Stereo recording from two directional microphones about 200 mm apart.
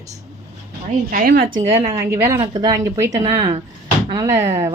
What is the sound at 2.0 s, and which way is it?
A woman's voice, 15° right (ahead or behind).